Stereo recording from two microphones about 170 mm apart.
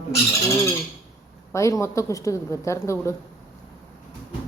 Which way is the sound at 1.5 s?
15° left (ahead or behind).